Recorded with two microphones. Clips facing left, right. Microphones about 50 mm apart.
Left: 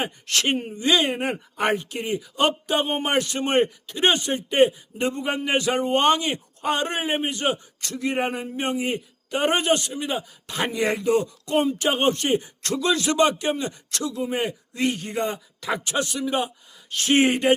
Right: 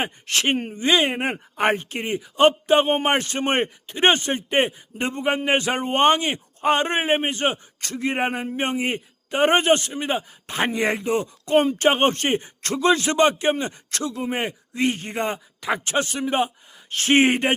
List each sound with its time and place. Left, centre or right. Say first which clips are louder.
0.0 s speech: right 1 dB; right